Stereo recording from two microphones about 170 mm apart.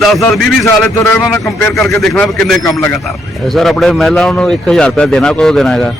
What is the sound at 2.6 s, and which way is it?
Speech, 15° left (ahead or behind).